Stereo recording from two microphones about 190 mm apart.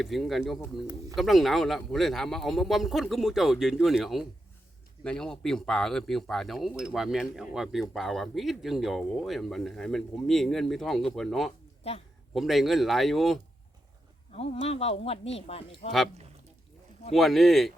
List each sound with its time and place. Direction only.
0.0 s speech: centre (ahead or behind)
11.8 s speech: 30° left (ahead or behind)
12.3 s speech: centre (ahead or behind)
14.3 s speech: 30° left (ahead or behind)
17.2 s speech: centre (ahead or behind)